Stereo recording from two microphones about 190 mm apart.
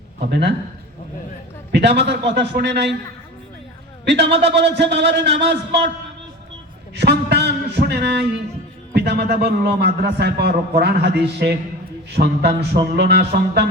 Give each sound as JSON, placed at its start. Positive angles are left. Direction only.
{"t": 0.3, "sound": "a man's voice", "side_deg": -60}
{"t": 1.7, "sound": "a man's voice", "side_deg": -65}
{"t": 4.0, "sound": "a man's voice", "side_deg": -65}
{"t": 6.9, "sound": "a sound", "side_deg": -60}
{"t": 8.9, "sound": "a man's voice", "side_deg": -60}